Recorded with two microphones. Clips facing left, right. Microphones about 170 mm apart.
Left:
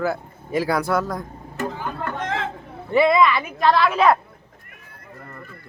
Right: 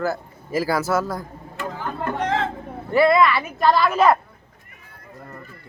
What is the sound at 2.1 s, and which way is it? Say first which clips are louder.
Chatter: right 6 dB; 35° right (ahead or behind).